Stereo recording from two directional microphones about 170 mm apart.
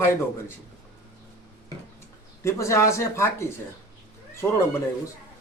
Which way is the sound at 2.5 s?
15° left (ahead or behind).